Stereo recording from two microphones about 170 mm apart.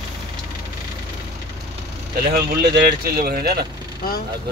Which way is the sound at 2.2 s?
70° right (ahead or behind).